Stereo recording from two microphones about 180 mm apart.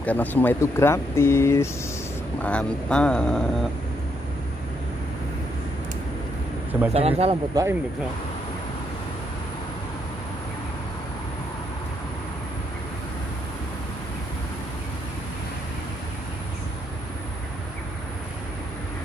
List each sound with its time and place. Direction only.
0.0 s speech: 10° left (ahead or behind)
6.9 s speech: 35° right (ahead or behind)
7.5 s speech: 20° right (ahead or behind)